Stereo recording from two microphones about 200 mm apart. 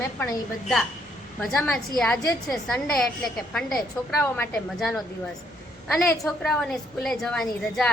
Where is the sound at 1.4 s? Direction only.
5° left (ahead or behind).